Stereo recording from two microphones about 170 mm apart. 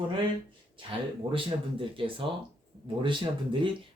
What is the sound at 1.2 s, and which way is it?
Speech, 30° right (ahead or behind).